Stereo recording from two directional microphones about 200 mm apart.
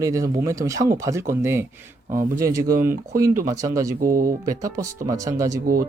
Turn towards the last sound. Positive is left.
turn(degrees=-15)  # may be behind; listen again after turning